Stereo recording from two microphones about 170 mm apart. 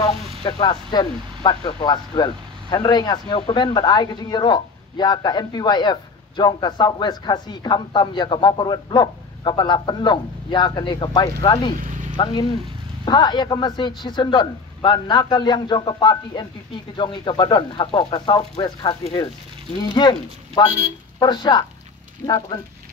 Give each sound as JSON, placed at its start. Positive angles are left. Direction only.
{"t": 0.4, "sound": "speech", "side_deg": 25}